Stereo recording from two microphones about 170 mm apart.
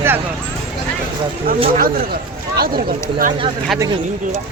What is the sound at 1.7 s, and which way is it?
Speech, 55° right (ahead or behind).